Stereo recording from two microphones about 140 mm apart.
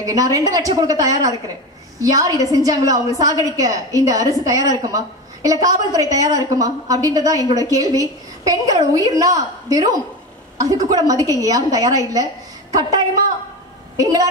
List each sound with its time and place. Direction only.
0.0 s a woman's voice: 25° right (ahead or behind)
13.9 s a woman's voice: 25° right (ahead or behind)